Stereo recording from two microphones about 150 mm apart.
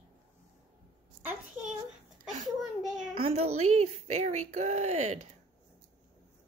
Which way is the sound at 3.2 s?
45° right (ahead or behind).